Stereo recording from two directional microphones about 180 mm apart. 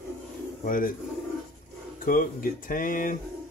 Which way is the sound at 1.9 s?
50° left (ahead or behind).